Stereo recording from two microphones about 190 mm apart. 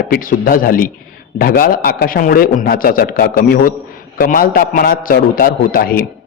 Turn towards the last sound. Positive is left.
turn(degrees=50)  # may be behind; listen again after turning